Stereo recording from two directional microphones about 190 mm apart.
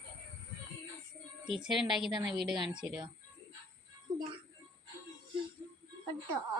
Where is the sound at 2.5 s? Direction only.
25° right (ahead or behind).